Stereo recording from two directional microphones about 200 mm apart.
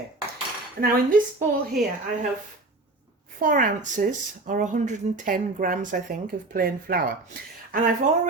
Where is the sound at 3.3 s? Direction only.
40° right (ahead or behind).